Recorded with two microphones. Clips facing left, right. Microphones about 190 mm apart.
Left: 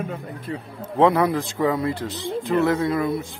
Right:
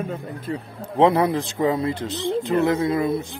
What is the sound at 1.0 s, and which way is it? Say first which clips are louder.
Speech: even; 25° right (ahead or behind).